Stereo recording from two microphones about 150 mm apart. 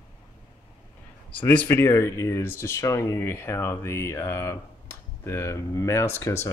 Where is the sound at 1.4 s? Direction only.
10° left (ahead or behind).